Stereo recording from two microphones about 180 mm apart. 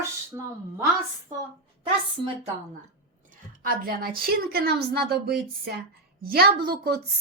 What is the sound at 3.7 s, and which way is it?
A woman's voice, 55° right (ahead or behind).